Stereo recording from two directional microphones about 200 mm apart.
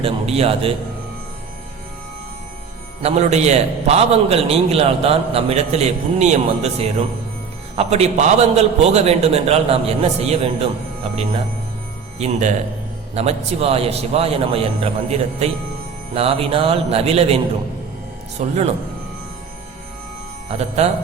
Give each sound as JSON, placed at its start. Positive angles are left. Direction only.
{"t": 0.0, "sound": "a man's voice", "side_deg": -30}
{"t": 3.0, "sound": "a man's voice", "side_deg": -35}
{"t": 12.2, "sound": "a man's voice", "side_deg": -35}
{"t": 20.8, "sound": "a man's voice", "side_deg": -35}